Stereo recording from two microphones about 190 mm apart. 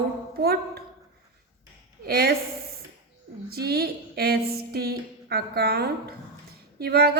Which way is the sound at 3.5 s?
55° right (ahead or behind).